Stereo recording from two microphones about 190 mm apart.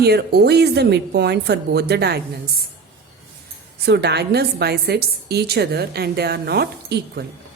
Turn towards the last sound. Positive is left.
turn(degrees=-60)  # may be behind; listen again after turning